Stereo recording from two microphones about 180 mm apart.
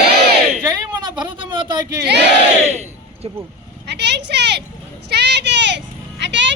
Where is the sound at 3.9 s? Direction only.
70° right (ahead or behind).